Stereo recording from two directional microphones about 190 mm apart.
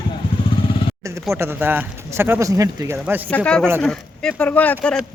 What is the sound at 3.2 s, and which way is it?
Speech, 5° left (ahead or behind).